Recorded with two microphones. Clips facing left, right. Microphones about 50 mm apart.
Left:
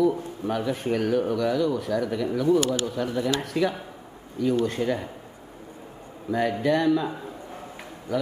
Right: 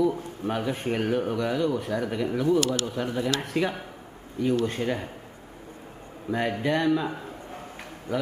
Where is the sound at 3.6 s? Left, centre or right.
Right.